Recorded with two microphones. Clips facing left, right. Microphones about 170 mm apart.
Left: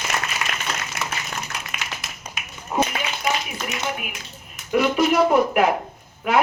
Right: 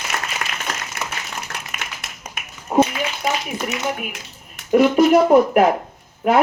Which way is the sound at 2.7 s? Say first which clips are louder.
Right 7 dB; 50° right (ahead or behind).